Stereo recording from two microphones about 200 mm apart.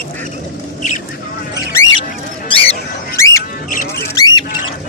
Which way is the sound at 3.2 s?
15° left (ahead or behind).